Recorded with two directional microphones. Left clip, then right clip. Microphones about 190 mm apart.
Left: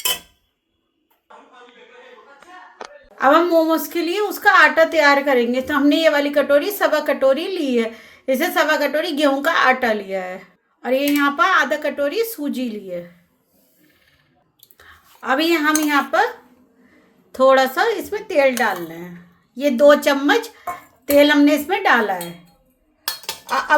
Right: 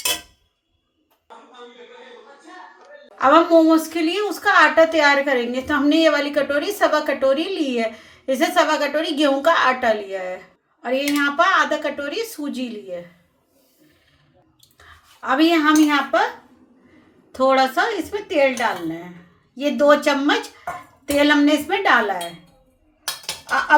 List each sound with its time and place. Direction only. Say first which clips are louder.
3.2 s a woman's voice: right 1 dB; 40° left (ahead or behind)
14.6 s squish: left 1 dB; 45° left (ahead or behind)
17.3 s a woman's voice: left 3 dB; 55° left (ahead or behind)